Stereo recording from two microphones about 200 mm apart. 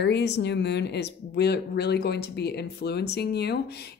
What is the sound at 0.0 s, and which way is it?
Speech, 55° left (ahead or behind).